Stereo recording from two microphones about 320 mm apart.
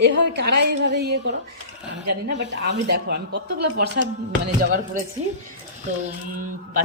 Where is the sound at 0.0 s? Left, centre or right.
Right.